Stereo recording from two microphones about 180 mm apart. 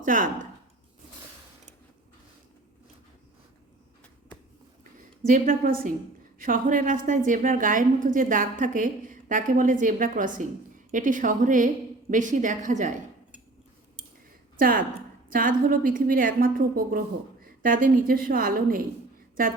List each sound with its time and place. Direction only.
0.0 s a woman's voice: 50° right (ahead or behind)
4.9 s a woman's voice: 50° right (ahead or behind)
14.6 s a woman's voice: 50° right (ahead or behind)